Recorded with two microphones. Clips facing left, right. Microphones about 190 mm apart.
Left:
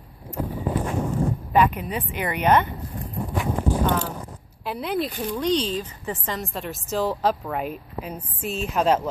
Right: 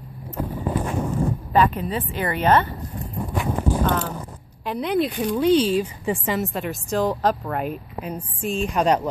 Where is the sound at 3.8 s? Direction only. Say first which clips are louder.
Right 1 dB; 10° left (ahead or behind).